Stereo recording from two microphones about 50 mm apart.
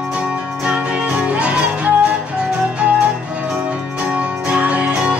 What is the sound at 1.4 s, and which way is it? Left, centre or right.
Music, right.